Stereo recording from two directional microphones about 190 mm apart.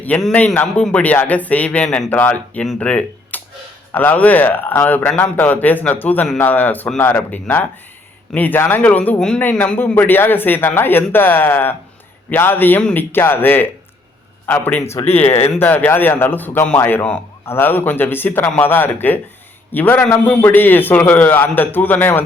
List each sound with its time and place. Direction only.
0.0 s a man's voice: 5° left (ahead or behind)
15.0 s speech: 35° left (ahead or behind)
15.4 s a man's voice: 10° left (ahead or behind)